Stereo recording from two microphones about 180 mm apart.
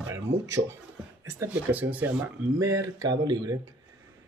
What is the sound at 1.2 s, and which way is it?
Speech, 10° right (ahead or behind).